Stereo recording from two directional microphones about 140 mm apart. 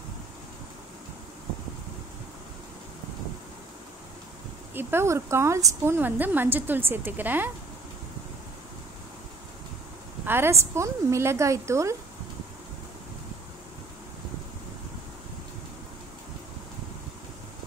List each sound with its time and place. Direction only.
4.7 s a woman's voice: 20° right (ahead or behind)
10.2 s a woman's voice: 15° right (ahead or behind)